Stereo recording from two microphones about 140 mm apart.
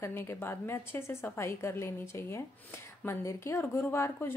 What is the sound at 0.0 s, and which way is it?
A woman's voice, 20° left (ahead or behind).